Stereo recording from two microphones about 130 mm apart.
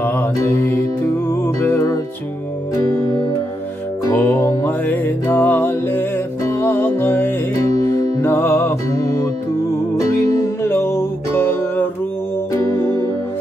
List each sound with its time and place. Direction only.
0.0 s music: 15° left (ahead or behind)
4.0 s music: 15° left (ahead or behind)
10.3 s music: 20° left (ahead or behind)